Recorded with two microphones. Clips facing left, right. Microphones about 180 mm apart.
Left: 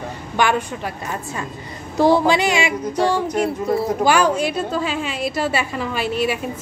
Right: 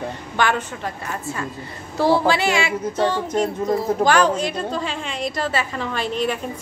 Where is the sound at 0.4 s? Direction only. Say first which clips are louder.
Left 2 dB; 10° left (ahead or behind).